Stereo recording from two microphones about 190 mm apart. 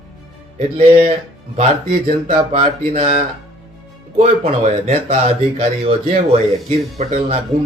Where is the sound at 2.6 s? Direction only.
45° right (ahead or behind).